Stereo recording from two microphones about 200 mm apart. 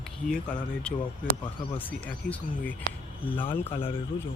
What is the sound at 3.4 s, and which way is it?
Speech, 25° left (ahead or behind).